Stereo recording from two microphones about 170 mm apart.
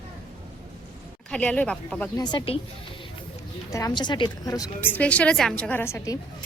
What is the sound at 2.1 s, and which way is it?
Speech, 25° left (ahead or behind).